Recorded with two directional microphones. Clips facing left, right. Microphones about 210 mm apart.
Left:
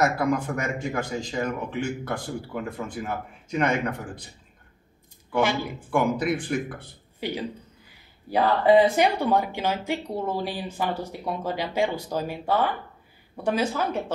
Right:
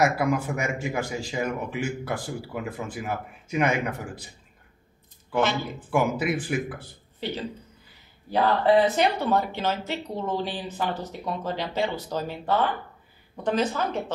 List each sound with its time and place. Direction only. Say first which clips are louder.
0.0 s speech: even; 10° right (ahead or behind)
5.3 s speech: left 1 dB; 10° left (ahead or behind)
5.9 s speech: left 1 dB; 5° right (ahead or behind)
7.2 s speech: left 1 dB; 10° left (ahead or behind)